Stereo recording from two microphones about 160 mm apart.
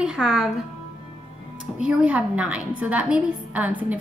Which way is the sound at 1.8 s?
10° right (ahead or behind).